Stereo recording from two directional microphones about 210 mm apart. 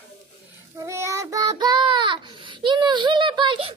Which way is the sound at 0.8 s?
15° right (ahead or behind).